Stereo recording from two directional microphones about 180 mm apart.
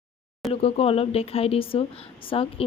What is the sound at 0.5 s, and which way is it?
Speech, 30° left (ahead or behind).